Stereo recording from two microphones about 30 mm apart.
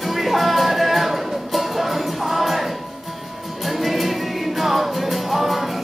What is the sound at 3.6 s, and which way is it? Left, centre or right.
Music, centre.